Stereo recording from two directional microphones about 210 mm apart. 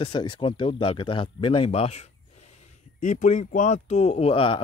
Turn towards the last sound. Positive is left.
turn(degrees=25)  # may be behind; listen again after turning